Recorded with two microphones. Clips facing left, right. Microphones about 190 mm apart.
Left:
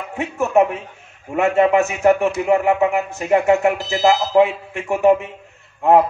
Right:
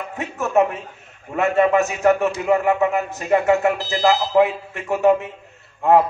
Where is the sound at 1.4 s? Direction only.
25° left (ahead or behind).